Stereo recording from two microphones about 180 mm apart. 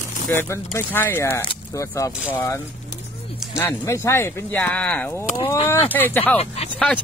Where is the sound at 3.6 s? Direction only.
15° left (ahead or behind).